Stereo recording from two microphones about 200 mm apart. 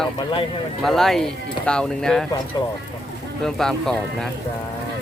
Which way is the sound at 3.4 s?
5° left (ahead or behind).